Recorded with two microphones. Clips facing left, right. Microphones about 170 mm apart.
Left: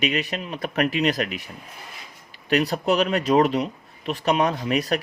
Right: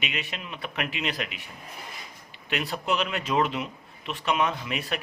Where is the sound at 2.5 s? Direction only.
40° left (ahead or behind).